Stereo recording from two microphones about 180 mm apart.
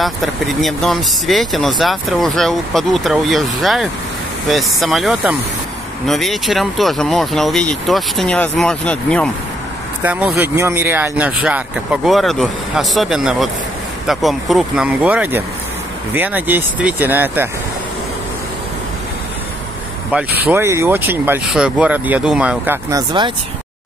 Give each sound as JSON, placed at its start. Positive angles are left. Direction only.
{"t": 0.0, "sound": "speech", "side_deg": 0}
{"t": 10.0, "sound": "speech", "side_deg": -10}
{"t": 20.5, "sound": "speech", "side_deg": -15}